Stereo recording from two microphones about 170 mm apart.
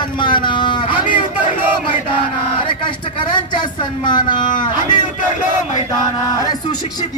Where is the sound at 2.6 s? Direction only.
30° left (ahead or behind).